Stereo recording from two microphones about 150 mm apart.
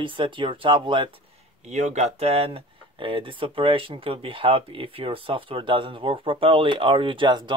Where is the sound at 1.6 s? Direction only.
50° right (ahead or behind); by 7.5 s 30° right (ahead or behind).